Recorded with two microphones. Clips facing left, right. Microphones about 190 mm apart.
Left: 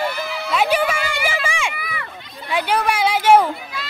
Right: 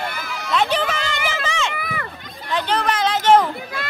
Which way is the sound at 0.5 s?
10° left (ahead or behind).